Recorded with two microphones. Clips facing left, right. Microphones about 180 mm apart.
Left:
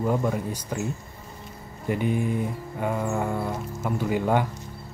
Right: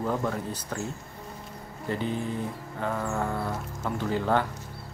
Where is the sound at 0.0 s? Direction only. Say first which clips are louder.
Left 4 dB; 15° left (ahead or behind).